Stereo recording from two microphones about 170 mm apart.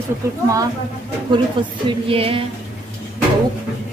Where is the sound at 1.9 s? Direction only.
35° right (ahead or behind).